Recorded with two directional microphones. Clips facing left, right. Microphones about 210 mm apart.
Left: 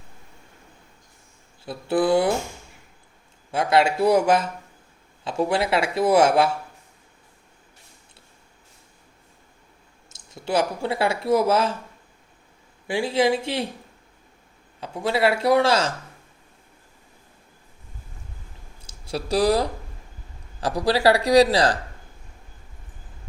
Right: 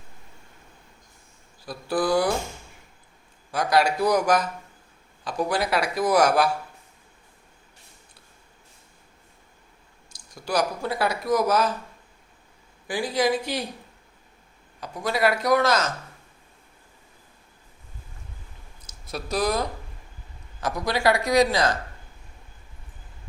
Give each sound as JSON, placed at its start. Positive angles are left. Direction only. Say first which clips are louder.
{"t": 1.6, "sound": "speech", "louder": "left 4 dB", "side_deg": 25}
{"t": 3.5, "sound": "speech", "louder": "left 2 dB", "side_deg": 25}
{"t": 10.1, "sound": "speech", "louder": "left 3 dB", "side_deg": 25}
{"t": 12.9, "sound": "speech", "louder": "left 3 dB", "side_deg": 25}
{"t": 14.8, "sound": "speech", "louder": "left 2 dB", "side_deg": 25}
{"t": 18.9, "sound": "speech", "louder": "left 5 dB", "side_deg": 30}